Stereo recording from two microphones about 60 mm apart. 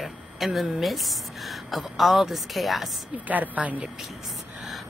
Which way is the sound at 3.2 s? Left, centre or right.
Right.